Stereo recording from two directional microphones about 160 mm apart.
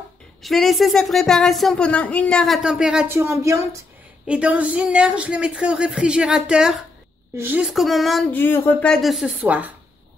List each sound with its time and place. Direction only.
0.4 s speech: centre (ahead or behind)
3.1 s speech: 15° right (ahead or behind); by 8.3 s centre (ahead or behind)
8.3 s speech: 15° left (ahead or behind); by 9.7 s 10° right (ahead or behind)